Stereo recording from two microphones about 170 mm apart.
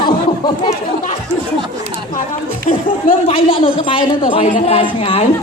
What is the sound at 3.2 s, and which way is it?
A man's voice, 30° left (ahead or behind).